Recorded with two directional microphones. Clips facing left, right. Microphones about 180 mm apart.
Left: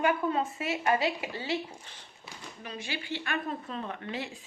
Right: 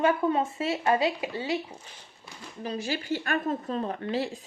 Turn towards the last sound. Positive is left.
turn(degrees=-35)  # may be behind; listen again after turning